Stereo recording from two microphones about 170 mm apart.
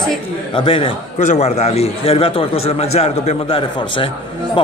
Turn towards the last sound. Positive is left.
turn(degrees=30)  # may be behind; listen again after turning